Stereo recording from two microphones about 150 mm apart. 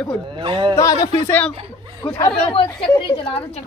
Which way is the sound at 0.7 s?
25° left (ahead or behind).